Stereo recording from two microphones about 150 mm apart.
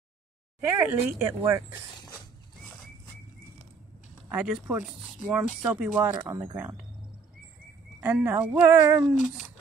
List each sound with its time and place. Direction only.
0.7 s speech: 15° right (ahead or behind)
4.3 s speech: 10° right (ahead or behind)
8.0 s speech: 15° right (ahead or behind)